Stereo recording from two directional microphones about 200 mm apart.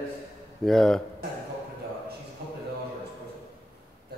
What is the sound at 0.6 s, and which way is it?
Speech, 5° left (ahead or behind).